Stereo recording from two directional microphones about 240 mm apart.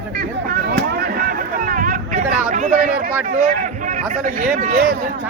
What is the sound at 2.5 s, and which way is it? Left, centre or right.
A man's voice, right.